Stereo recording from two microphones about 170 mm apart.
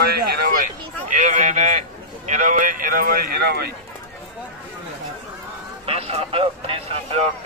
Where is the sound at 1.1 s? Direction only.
45° right (ahead or behind); by 3.7 s 70° right (ahead or behind).